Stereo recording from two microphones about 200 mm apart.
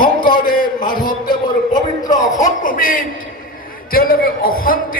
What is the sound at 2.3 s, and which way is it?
A man's voice, 40° left (ahead or behind).